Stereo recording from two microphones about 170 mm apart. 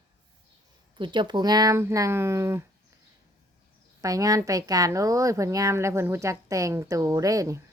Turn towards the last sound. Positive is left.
turn(degrees=-20)  # may be behind; listen again after turning